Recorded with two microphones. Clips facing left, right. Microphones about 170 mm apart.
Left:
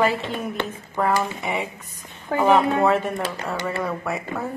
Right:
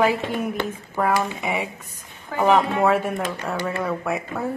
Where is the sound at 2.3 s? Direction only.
55° left (ahead or behind).